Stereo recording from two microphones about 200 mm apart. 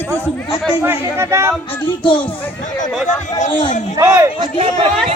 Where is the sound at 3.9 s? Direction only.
15° right (ahead or behind).